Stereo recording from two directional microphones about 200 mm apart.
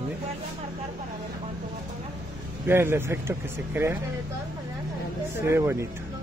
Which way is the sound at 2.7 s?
10° right (ahead or behind).